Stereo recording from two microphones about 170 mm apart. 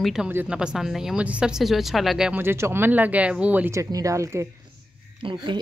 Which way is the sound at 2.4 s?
15° right (ahead or behind).